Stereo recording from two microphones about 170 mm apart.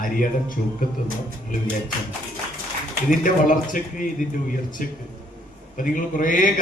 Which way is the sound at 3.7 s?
50° left (ahead or behind).